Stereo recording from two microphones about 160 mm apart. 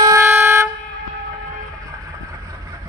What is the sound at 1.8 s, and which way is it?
Vehicle, 20° right (ahead or behind).